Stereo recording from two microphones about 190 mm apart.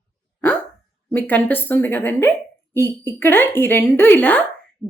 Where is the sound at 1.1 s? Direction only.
10° left (ahead or behind).